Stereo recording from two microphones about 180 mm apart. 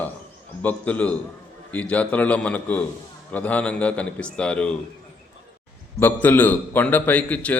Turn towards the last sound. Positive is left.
turn(degrees=10)  # may be behind; listen again after turning